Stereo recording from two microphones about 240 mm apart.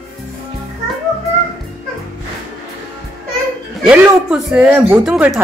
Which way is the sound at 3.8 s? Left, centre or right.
Centre.